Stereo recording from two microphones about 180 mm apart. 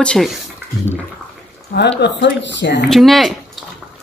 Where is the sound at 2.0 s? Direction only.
80° left.